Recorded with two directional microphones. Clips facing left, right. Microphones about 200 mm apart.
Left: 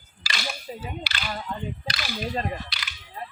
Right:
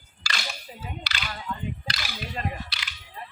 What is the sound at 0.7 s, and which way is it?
Cap gun, 30° left (ahead or behind).